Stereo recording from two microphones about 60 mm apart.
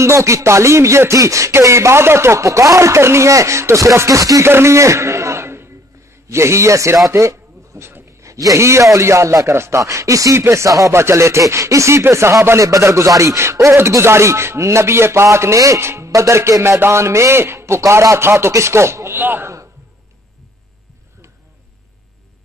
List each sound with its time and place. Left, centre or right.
0.0 s speech: right
4.2 s speech: right
4.5 s a sound: right
6.2 s speech: right
7.1 s a sound: right
8.5 s speech: right
10.9 s speech: right
16.8 s speech: right
19.1 s speech: right